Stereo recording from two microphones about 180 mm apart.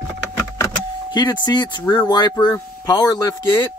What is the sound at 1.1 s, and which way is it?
Speech, 25° left (ahead or behind).